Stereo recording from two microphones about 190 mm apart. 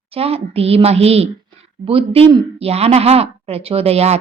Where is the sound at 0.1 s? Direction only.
30° right (ahead or behind).